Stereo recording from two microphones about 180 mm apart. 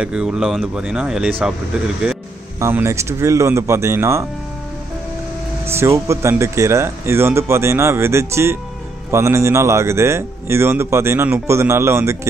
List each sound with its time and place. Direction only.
0.0 s speech: 5° right (ahead or behind)
2.6 s a man's voice: 15° right (ahead or behind)
5.7 s a man's voice: 15° right (ahead or behind)